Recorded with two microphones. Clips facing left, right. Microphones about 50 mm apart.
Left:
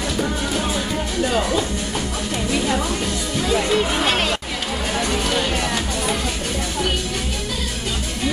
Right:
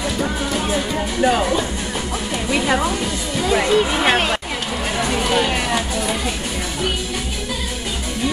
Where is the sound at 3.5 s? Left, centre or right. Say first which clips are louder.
Right 3 dB; right.